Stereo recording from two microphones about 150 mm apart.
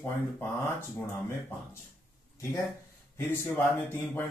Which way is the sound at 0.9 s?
15° left (ahead or behind).